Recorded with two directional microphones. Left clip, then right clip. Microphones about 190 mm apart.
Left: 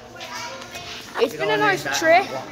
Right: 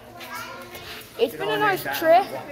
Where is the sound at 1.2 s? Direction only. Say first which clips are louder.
Left 3 dB; 5° left (ahead or behind).